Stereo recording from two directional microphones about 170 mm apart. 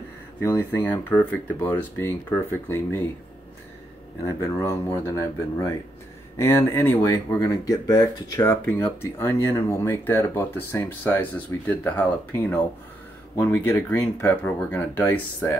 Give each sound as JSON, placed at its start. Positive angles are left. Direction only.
{"t": 0.4, "sound": "speech", "side_deg": 15}
{"t": 4.2, "sound": "speech", "side_deg": 15}